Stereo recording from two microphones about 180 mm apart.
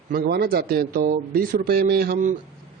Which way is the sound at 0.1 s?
60° right (ahead or behind).